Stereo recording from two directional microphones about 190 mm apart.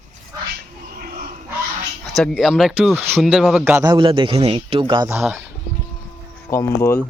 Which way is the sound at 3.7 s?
20° right (ahead or behind).